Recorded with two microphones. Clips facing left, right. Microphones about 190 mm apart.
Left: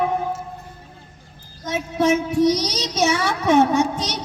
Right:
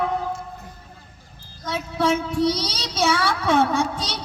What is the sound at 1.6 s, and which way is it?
Child singing, 20° left (ahead or behind).